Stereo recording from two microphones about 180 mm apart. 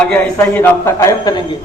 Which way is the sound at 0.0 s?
10° left (ahead or behind).